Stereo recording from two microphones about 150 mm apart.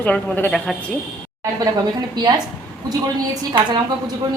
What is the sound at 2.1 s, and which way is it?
A woman's voice, 25° right (ahead or behind).